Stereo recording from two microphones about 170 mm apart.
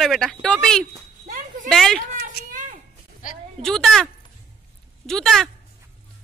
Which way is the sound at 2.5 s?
50° right (ahead or behind).